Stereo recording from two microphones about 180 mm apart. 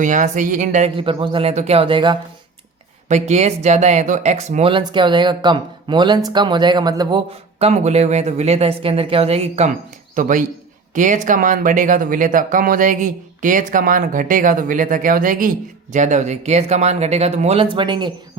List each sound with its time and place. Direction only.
0.0 s speech: 45° right (ahead or behind)
0.9 s speech: 30° right (ahead or behind)
3.1 s speech: 40° right (ahead or behind)
10.2 s speech: 45° right (ahead or behind); by 18.1 s 25° right (ahead or behind)